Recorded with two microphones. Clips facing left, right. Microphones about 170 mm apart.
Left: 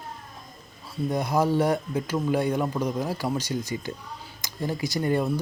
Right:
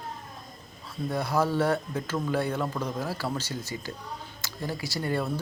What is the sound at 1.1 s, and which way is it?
Speech, 15° left (ahead or behind).